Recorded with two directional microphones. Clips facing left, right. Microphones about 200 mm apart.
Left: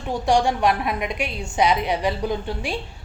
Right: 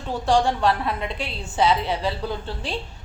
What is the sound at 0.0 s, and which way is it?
A woman's voice, 15° left (ahead or behind).